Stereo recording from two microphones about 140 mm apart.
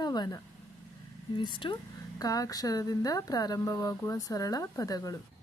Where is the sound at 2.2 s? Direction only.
25° left (ahead or behind).